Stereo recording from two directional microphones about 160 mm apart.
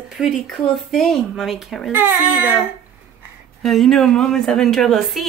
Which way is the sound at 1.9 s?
10° right (ahead or behind).